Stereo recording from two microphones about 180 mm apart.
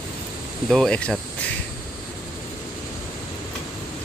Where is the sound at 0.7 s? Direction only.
5° left (ahead or behind).